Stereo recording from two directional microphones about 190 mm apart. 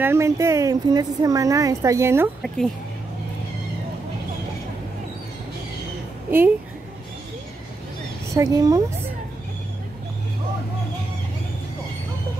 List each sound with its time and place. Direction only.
0.0 s a woman's voice: 15° right (ahead or behind)
2.4 s speech: centre (ahead or behind)
6.3 s a woman's voice: 10° right (ahead or behind)
8.4 s a woman's voice: 20° right (ahead or behind)